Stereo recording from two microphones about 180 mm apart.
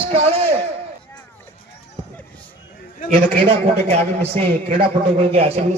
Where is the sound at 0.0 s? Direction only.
30° right (ahead or behind).